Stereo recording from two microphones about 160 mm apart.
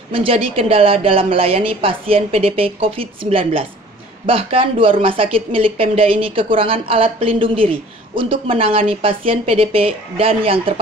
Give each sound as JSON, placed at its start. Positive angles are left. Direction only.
{"t": 0.1, "sound": "speech", "side_deg": -35}